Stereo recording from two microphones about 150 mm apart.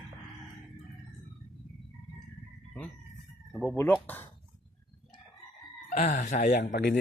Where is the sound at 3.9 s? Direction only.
10° left (ahead or behind).